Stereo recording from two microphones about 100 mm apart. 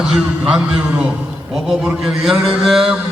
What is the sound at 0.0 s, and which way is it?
A man's voice, 10° right (ahead or behind).